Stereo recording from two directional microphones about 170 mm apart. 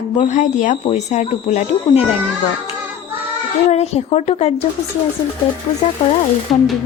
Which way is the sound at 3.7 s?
40° left (ahead or behind).